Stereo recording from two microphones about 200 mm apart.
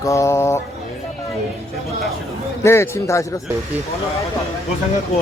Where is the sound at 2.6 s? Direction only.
15° left (ahead or behind).